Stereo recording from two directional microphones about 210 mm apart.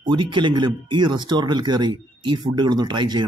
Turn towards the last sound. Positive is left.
turn(degrees=-20)  # may be behind; listen again after turning